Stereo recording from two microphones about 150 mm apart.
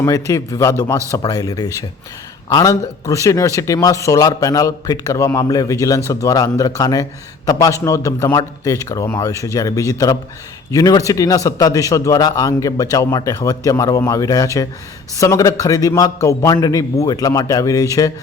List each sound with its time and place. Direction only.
0.0 s a man's voice: 20° left (ahead or behind)